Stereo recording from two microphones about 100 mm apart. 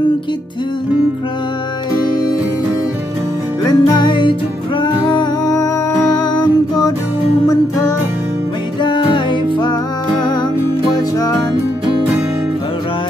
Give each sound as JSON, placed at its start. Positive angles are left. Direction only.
{"t": 3.6, "sound": "music", "side_deg": 45}
{"t": 5.0, "sound": "music", "side_deg": 45}
{"t": 8.8, "sound": "music", "side_deg": 55}